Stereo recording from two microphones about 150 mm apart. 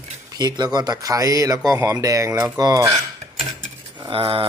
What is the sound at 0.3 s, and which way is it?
Speech, 25° right (ahead or behind).